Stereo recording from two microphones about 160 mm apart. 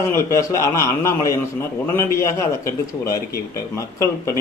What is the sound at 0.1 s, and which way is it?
A man's voice, 20° left (ahead or behind).